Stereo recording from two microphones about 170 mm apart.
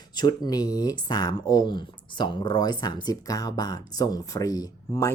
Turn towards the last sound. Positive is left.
turn(degrees=20)  # may be behind; listen again after turning